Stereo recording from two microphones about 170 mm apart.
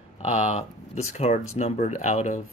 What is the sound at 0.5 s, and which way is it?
Speech, 40° left (ahead or behind).